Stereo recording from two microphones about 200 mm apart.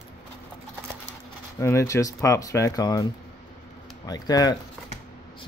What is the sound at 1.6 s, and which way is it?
Speech, 15° left (ahead or behind).